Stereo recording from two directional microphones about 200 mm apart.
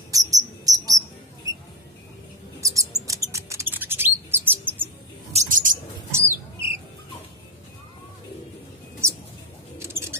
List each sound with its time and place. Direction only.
0.1 s cricket: 15° right (ahead or behind)
2.6 s mouse: 15° right (ahead or behind)
3.1 s bird: 15° right (ahead or behind)
5.3 s a sound: 40° right (ahead or behind)
6.1 s a sound: 15° right (ahead or behind)
9.0 s bird: 15° right (ahead or behind)
9.8 s chewing: 15° right (ahead or behind)